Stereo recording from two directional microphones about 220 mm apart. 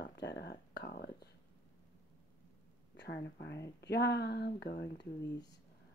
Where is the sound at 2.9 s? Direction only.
45° left (ahead or behind).